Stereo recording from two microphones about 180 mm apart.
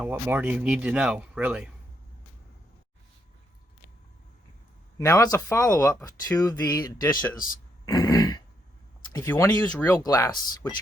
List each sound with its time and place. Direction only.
0.0 s speech: 10° right (ahead or behind)
4.9 s speech: 15° left (ahead or behind)